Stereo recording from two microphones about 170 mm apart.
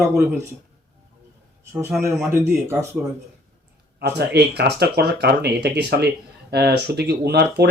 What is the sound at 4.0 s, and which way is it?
Speech, 75° right (ahead or behind).